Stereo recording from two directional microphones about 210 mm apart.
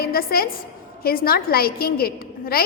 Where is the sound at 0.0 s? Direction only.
45° left (ahead or behind).